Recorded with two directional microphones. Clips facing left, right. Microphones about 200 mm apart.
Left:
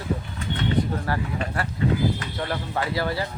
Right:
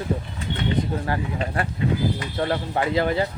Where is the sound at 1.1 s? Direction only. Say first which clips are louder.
Right 1 dB; 20° right (ahead or behind).